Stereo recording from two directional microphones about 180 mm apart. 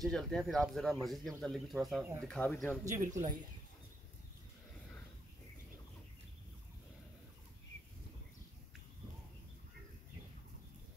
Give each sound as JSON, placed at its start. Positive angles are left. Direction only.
{"t": 0.0, "sound": "speech", "side_deg": 0}
{"t": 3.1, "sound": "speech", "side_deg": -40}